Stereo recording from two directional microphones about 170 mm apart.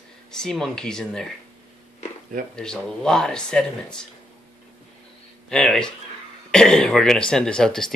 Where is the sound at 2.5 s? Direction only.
5° left (ahead or behind).